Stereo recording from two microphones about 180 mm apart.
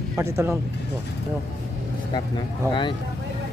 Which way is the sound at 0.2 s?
15° right (ahead or behind).